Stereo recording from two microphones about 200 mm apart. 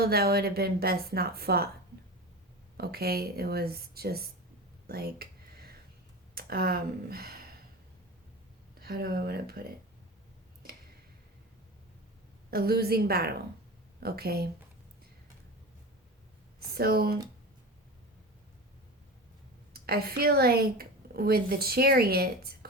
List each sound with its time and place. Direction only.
0.0 s a woman's voice: 50° right (ahead or behind)
2.7 s a woman's voice: 50° right (ahead or behind)
5.2 s a sound: 50° right (ahead or behind)
6.3 s speech: 50° right (ahead or behind)
8.8 s a woman's voice: 50° right (ahead or behind)
12.5 s a woman's voice: 50° right (ahead or behind)
16.6 s speech: 50° right (ahead or behind)
19.7 s a woman's voice: 50° right (ahead or behind)